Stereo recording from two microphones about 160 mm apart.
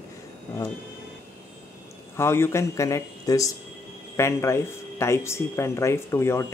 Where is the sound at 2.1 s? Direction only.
15° left (ahead or behind).